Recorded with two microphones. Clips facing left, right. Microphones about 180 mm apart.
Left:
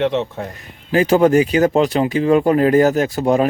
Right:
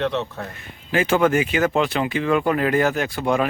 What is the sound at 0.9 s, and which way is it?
Speech, 35° left (ahead or behind).